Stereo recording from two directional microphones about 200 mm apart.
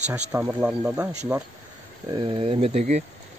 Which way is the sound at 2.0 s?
25° right (ahead or behind).